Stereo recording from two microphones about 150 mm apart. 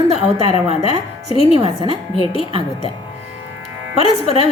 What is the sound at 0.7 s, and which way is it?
A woman's voice, 40° left (ahead or behind).